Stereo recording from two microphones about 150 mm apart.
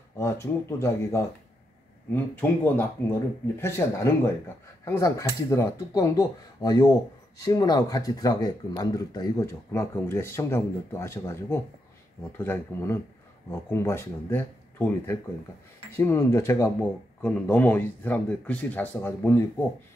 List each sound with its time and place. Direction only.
0.2 s speech: 20° left (ahead or behind)